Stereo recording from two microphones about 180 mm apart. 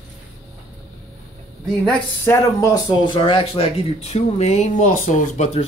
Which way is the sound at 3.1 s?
30° left (ahead or behind).